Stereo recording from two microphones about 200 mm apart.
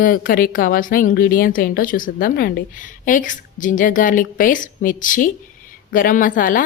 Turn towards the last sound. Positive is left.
turn(degrees=45)  # may be behind; listen again after turning